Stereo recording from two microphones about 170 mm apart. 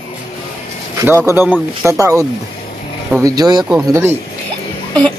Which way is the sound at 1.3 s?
15° right (ahead or behind).